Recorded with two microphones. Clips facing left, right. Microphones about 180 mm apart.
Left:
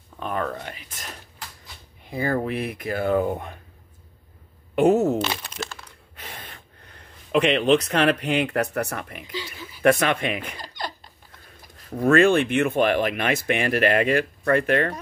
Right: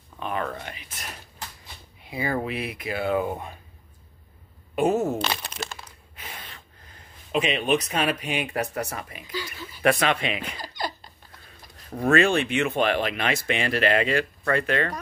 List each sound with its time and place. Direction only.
0.2 s a sound: 45° left (ahead or behind)
2.0 s speech: 50° left (ahead or behind)
4.7 s speech: 65° left (ahead or behind)
6.1 s gasp: 50° left (ahead or behind)
9.3 s speech: 25° left (ahead or behind)
9.8 s speech: 50° left (ahead or behind)
12.1 s speech: 55° left (ahead or behind)